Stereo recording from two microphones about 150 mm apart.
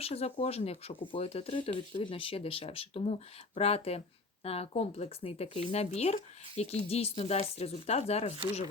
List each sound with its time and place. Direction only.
0.0 s speech: 40° left (ahead or behind)